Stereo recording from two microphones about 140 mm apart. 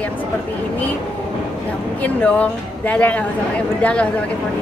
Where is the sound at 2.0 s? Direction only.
10° left (ahead or behind).